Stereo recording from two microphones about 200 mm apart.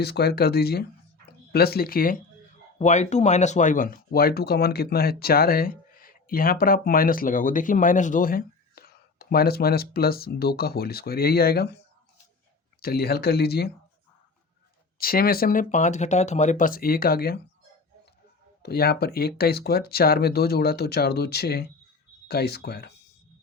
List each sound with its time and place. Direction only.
0.0 s speech: 55° left (ahead or behind)
2.7 s speech: 35° left (ahead or behind); by 11.8 s 50° left (ahead or behind)
12.8 s speech: 50° left (ahead or behind)
14.9 s speech: 45° left (ahead or behind)
18.6 s speech: 50° left (ahead or behind)